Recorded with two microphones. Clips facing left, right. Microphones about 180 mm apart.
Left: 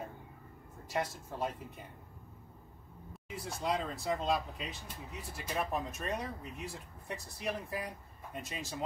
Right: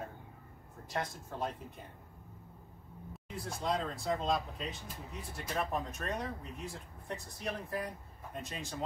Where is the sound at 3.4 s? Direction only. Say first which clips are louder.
Even; 5° left (ahead or behind).